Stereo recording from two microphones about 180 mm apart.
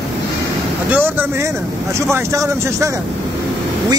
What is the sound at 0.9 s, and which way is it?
Speech, 10° right (ahead or behind).